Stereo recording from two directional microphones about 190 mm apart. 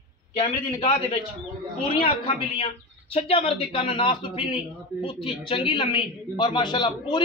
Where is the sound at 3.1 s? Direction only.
30° left (ahead or behind).